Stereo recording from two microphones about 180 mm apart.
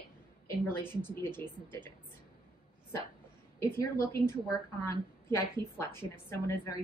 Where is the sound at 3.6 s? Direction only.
15° left (ahead or behind).